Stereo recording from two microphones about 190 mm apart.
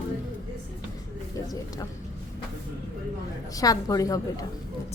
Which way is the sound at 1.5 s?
20° left (ahead or behind).